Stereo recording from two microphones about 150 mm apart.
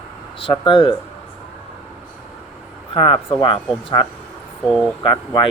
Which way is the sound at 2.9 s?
35° left (ahead or behind).